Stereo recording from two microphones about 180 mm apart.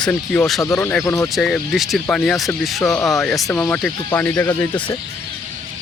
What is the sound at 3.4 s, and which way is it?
Speech, 10° left (ahead or behind).